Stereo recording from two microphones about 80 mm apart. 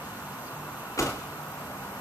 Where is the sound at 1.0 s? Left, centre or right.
Left.